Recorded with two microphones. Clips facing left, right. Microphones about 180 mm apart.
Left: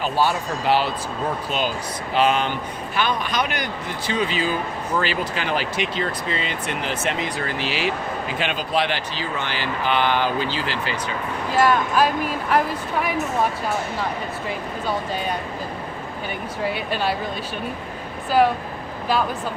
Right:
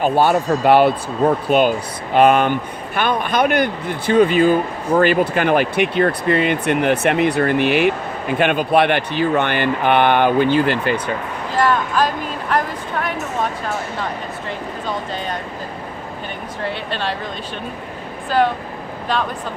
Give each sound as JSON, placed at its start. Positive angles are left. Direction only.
{"t": 0.0, "sound": "speech", "side_deg": -55}
{"t": 11.5, "sound": "speech", "side_deg": 10}
{"t": 16.6, "sound": "speech", "side_deg": 10}